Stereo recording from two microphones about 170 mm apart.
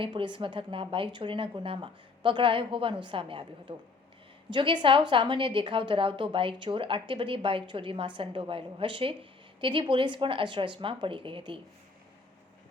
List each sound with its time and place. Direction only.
0.0 s a woman's voice: 30° right (ahead or behind)